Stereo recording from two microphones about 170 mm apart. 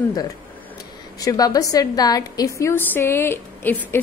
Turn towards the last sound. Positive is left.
turn(degrees=15)  # may be behind; listen again after turning